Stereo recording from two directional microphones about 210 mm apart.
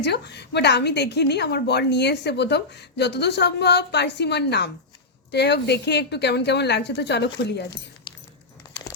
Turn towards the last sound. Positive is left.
turn(degrees=55)  # may be behind; listen again after turning